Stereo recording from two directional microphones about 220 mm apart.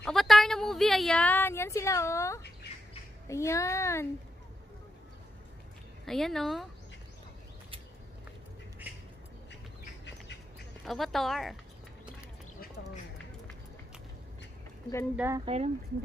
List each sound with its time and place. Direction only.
0.0 s a sound: centre (ahead or behind)
3.3 s a child's voice: 15° left (ahead or behind)
6.0 s speech: centre (ahead or behind)
10.9 s speech: centre (ahead or behind)
15.1 s speech: 10° right (ahead or behind)
15.4 s speech: 30° right (ahead or behind)